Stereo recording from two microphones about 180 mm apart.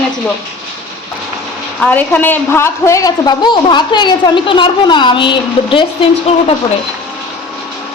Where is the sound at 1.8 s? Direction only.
10° left (ahead or behind); by 6.3 s 30° left (ahead or behind).